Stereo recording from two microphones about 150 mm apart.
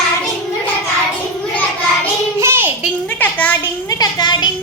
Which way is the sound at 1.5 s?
10° left (ahead or behind).